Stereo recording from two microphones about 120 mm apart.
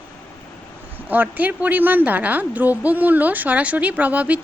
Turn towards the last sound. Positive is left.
turn(degrees=-10)  # may be behind; listen again after turning